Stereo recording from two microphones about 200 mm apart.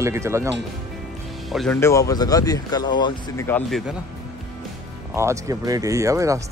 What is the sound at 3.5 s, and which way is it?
Speech, 5° left (ahead or behind).